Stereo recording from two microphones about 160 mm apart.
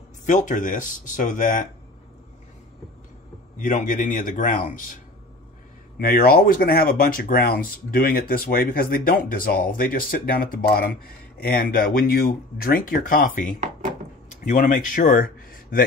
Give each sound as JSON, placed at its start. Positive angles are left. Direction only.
{"t": 0.2, "sound": "speech", "side_deg": 50}
{"t": 3.5, "sound": "speech", "side_deg": 55}
{"t": 5.9, "sound": "speech", "side_deg": 65}
{"t": 13.6, "sound": "speech", "side_deg": -50}
{"t": 14.3, "sound": "speech", "side_deg": 50}